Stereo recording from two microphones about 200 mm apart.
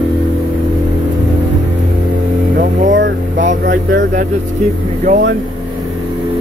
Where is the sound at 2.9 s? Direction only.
65° right (ahead or behind).